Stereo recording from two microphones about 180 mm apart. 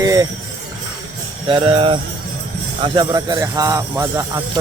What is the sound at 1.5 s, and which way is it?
Speech, 30° right (ahead or behind).